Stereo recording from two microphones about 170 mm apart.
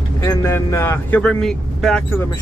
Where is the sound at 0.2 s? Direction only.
15° left (ahead or behind).